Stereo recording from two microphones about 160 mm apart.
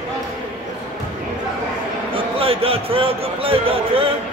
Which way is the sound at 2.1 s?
35° right (ahead or behind).